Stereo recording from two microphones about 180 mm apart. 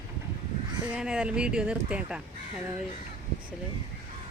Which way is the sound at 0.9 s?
5° right (ahead or behind).